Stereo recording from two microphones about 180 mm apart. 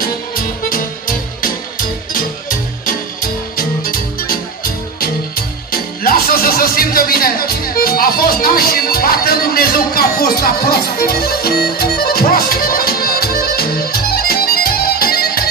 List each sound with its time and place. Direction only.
0.7 s music: 50° left (ahead or behind)
3.5 s music: 55° left (ahead or behind)
5.7 s music: 55° left (ahead or behind)